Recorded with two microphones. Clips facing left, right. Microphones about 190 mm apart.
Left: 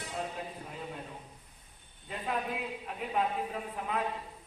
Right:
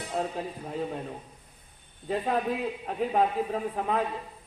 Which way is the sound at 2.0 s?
35° right (ahead or behind).